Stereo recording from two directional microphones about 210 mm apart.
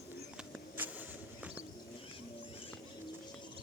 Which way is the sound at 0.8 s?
5° right (ahead or behind).